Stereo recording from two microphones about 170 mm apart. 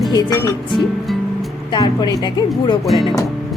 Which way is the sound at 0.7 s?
Centre (ahead or behind).